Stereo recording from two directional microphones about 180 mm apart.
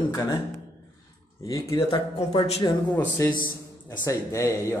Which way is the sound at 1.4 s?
20° left (ahead or behind).